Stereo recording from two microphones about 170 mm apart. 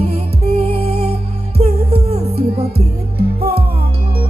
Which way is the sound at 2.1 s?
35° right (ahead or behind).